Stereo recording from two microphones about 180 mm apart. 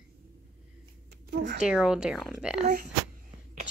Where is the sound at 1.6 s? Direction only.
5° right (ahead or behind).